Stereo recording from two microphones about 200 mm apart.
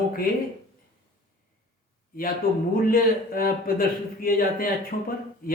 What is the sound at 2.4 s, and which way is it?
Speech, 45° left (ahead or behind).